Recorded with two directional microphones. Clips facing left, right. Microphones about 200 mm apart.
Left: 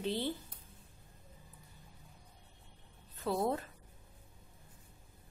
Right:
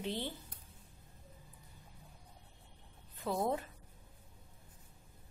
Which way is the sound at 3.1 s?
15° right (ahead or behind).